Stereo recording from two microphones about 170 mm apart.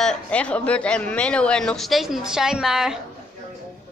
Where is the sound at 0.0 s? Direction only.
5° left (ahead or behind).